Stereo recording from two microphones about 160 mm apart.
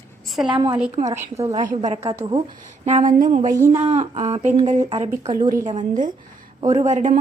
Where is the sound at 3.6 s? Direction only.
15° right (ahead or behind).